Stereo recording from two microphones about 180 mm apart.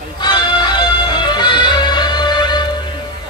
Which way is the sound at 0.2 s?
25° left (ahead or behind).